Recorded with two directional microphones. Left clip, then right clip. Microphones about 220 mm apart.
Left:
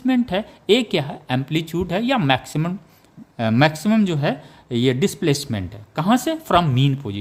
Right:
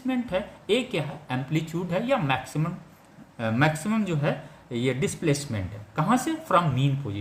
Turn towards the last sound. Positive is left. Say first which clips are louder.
# left 7 dB
turn(degrees=50)  # may be behind; listen again after turning